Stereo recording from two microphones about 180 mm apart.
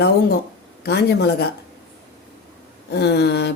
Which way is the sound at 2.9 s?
65° left (ahead or behind).